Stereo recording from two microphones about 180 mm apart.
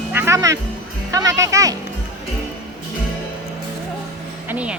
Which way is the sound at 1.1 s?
20° right (ahead or behind).